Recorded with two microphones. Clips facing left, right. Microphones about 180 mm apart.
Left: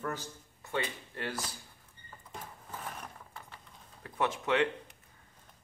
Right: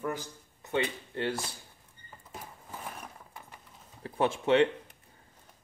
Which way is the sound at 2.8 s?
15° right (ahead or behind).